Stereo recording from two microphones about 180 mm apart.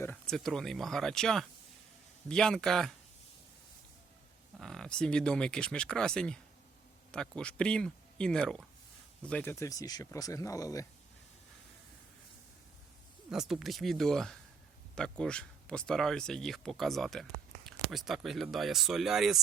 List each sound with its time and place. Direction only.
0.0 s speech: 5° left (ahead or behind)
4.6 s speech: 5° left (ahead or behind); by 10.8 s 20° left (ahead or behind)
13.3 s speech: centre (ahead or behind)